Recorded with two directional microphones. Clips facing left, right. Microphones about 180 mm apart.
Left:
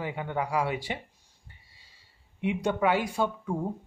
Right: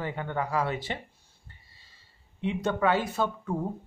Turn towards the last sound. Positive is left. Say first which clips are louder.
# even
turn(degrees=10)  # may be behind; listen again after turning